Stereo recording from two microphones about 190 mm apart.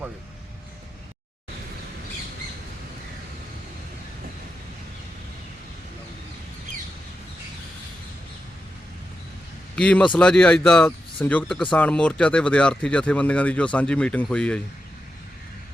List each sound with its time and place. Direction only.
9.7 s speech: 5° left (ahead or behind)